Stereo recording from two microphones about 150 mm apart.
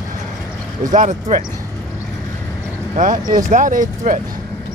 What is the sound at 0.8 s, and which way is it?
Speech, 60° right (ahead or behind).